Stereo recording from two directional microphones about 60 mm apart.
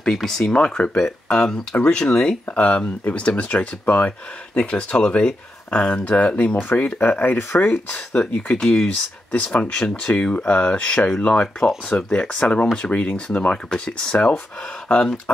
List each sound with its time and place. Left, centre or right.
0.0 s speech: centre
1.8 s speech: centre; by 7.8 s left
7.9 s speech: centre
8.8 s speech: left